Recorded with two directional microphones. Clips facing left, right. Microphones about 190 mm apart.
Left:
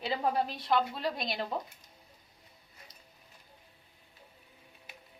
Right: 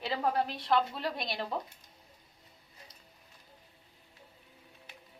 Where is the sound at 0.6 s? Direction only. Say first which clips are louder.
Even; centre (ahead or behind).